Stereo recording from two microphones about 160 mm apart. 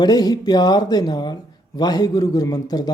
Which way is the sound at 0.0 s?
25° left (ahead or behind).